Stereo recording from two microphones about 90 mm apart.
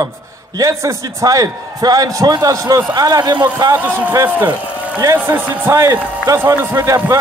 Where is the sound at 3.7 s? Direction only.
25° right (ahead or behind).